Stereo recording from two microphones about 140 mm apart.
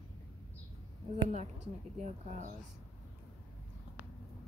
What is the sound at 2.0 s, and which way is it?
Speech, 60° right (ahead or behind).